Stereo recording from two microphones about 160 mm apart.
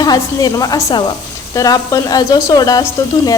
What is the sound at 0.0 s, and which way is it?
Speech, 25° left (ahead or behind).